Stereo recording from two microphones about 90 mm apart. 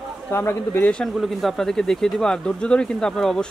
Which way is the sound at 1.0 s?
Centre (ahead or behind).